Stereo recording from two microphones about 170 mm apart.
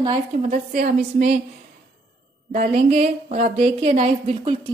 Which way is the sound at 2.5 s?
55° right (ahead or behind).